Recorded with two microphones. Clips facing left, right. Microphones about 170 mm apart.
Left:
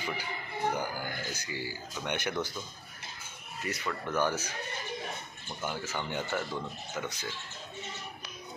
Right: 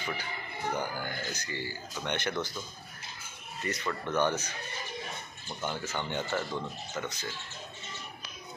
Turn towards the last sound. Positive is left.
turn(degrees=5)  # may be behind; listen again after turning